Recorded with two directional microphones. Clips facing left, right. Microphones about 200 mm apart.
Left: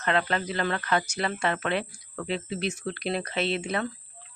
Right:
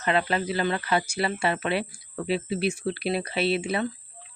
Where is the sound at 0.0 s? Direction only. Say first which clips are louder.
Right 2 dB; 10° right (ahead or behind).